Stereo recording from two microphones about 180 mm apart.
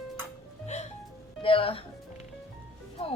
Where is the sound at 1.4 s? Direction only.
30° left (ahead or behind).